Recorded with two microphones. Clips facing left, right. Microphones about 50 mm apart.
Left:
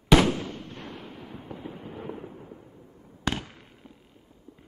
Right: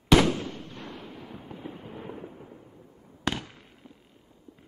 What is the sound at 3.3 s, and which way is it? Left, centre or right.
Fireworks, centre.